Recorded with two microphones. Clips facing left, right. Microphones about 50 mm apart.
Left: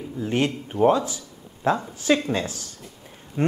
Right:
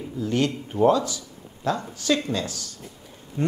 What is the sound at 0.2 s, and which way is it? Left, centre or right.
A man's voice, left.